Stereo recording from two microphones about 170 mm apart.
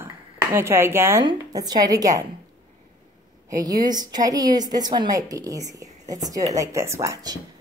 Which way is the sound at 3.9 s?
25° right (ahead or behind).